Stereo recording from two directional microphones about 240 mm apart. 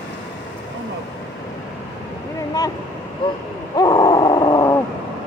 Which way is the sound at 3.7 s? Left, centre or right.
Centre.